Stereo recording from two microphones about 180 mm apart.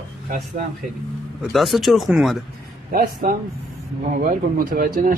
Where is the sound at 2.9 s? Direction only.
55° right (ahead or behind).